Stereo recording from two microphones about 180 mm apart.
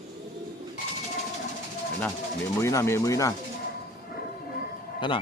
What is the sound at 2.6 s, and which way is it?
Speech, 15° left (ahead or behind).